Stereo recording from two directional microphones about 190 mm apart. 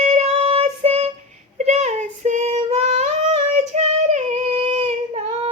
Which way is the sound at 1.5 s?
35° right (ahead or behind).